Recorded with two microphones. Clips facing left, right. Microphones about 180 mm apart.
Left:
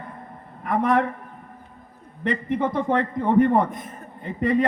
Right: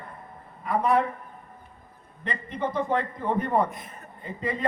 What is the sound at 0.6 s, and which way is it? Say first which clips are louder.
Speech: left 2 dB; 80° left.